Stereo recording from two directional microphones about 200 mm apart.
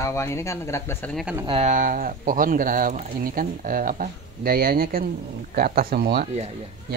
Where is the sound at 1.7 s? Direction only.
40° right (ahead or behind).